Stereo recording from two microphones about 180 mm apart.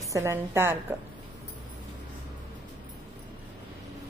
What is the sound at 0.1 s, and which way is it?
Speech, 15° right (ahead or behind).